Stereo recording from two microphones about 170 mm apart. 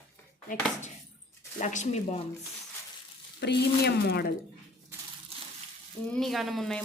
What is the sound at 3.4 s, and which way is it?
Speech, 80° left.